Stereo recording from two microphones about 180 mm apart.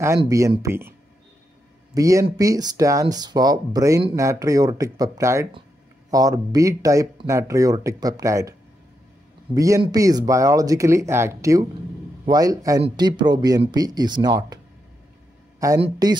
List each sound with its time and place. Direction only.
0.3 s speech: 15° right (ahead or behind)
2.0 s speech: 20° right (ahead or behind)
15.8 s speech: 25° right (ahead or behind)